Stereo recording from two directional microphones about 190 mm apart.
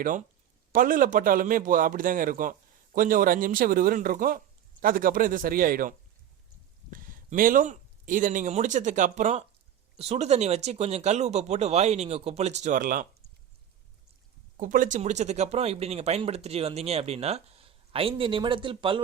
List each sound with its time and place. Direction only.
0.7 s a man's voice: 45° right (ahead or behind)
6.9 s speech: 45° right (ahead or behind)
14.6 s speech: 45° right (ahead or behind); by 19.0 s 25° right (ahead or behind)